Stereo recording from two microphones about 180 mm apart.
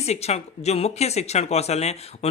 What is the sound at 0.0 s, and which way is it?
Speech, 35° left (ahead or behind).